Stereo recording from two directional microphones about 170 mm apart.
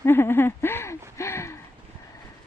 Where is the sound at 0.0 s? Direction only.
15° left (ahead or behind).